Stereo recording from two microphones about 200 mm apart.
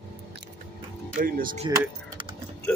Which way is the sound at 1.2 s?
45° right (ahead or behind).